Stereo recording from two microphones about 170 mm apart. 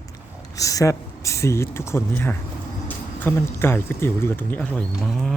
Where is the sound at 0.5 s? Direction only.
20° left (ahead or behind).